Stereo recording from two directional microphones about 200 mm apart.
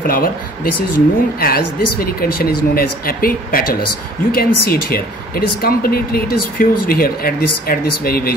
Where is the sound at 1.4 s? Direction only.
50° left (ahead or behind).